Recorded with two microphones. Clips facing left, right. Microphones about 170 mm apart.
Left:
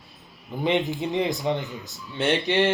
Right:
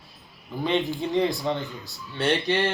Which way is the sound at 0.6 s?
20° left (ahead or behind).